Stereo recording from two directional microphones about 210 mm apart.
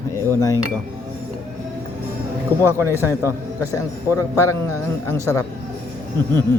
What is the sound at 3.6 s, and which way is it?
Speech, 15° left (ahead or behind).